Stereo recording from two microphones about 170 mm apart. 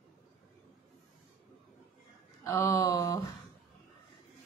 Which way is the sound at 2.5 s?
20° left (ahead or behind).